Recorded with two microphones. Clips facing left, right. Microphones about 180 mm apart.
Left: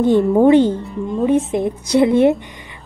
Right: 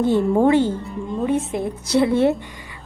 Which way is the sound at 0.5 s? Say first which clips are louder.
Left 5 dB; 20° left (ahead or behind).